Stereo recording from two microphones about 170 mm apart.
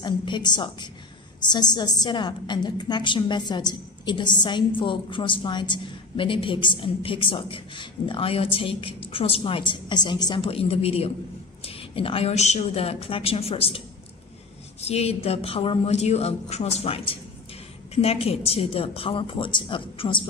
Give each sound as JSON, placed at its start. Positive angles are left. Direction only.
{"t": 0.0, "sound": "a woman's voice", "side_deg": 25}